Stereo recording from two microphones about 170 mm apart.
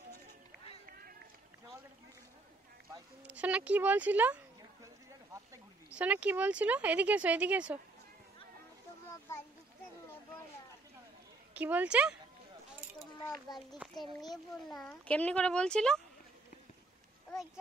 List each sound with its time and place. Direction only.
3.3 s speech: 10° right (ahead or behind)
5.9 s speech: 10° right (ahead or behind)
11.5 s speech: 10° right (ahead or behind)
13.2 s a child's voice: 25° left (ahead or behind)
13.7 s speech: centre (ahead or behind)